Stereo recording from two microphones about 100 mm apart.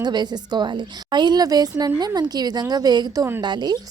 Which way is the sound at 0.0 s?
45° right (ahead or behind).